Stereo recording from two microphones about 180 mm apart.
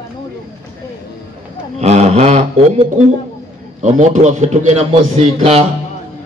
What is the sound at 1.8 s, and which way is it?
A man's voice, 35° right (ahead or behind).